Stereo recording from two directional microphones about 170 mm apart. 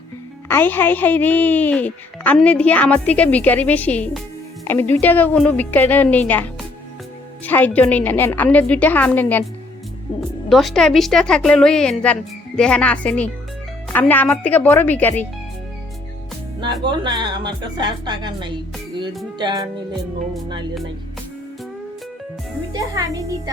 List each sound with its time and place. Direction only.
0.4 s a woman's voice: 15° left (ahead or behind)
16.8 s speech: 25° right (ahead or behind)
22.7 s speech: 20° right (ahead or behind)